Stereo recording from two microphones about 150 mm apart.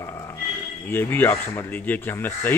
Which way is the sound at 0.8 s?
15° left (ahead or behind).